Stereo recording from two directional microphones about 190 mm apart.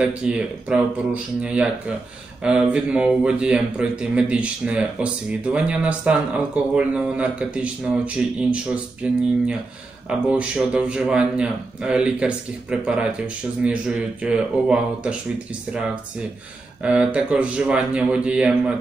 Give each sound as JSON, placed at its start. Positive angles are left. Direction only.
{"t": 0.0, "sound": "speech", "side_deg": -5}
{"t": 16.8, "sound": "speech", "side_deg": -5}